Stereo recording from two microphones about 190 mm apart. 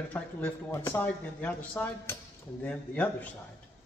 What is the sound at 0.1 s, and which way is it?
Speech, 15° left (ahead or behind).